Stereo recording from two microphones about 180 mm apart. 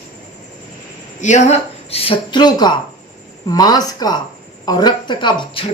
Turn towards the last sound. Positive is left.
turn(degrees=25)  # may be behind; listen again after turning